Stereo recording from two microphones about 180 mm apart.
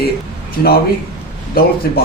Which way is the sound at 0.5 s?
60° left (ahead or behind).